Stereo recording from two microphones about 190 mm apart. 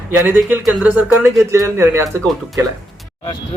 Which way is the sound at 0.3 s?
10° right (ahead or behind).